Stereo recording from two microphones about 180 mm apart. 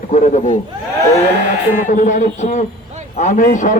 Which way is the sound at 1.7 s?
45° left (ahead or behind).